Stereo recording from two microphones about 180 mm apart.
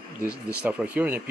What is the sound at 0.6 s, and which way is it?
Speech, 5° right (ahead or behind).